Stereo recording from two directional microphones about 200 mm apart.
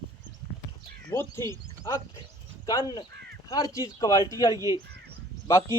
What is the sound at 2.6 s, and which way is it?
Speech, 20° left (ahead or behind).